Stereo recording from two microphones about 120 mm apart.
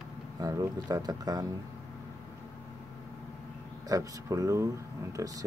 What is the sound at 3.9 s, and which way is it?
Speech, 30° right (ahead or behind).